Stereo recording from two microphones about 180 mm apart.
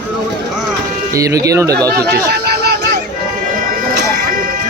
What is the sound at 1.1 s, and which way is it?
Speech, 20° right (ahead or behind).